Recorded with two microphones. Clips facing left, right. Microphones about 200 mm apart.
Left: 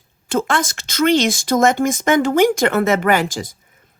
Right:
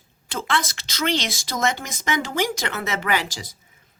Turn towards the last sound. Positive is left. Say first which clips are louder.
# left 8 dB
turn(degrees=50)  # may be behind; listen again after turning